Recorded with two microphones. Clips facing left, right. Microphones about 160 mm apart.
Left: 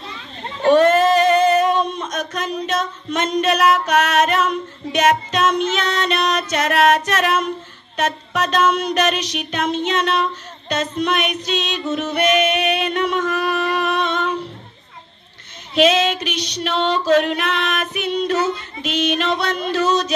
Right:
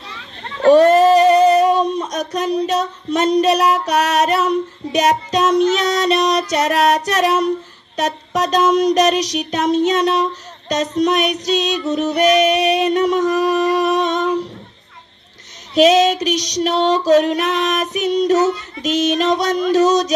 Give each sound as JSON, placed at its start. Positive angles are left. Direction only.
{"t": 0.7, "sound": "female singing", "side_deg": -35}
{"t": 15.7, "sound": "music", "side_deg": -40}